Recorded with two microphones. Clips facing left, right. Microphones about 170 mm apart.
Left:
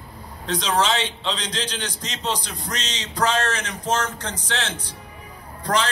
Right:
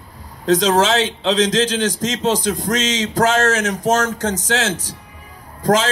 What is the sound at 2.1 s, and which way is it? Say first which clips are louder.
Speech: right 6 dB; 45° right (ahead or behind).